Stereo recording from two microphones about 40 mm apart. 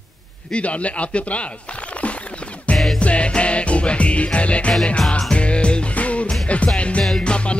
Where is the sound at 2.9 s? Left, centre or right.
Left.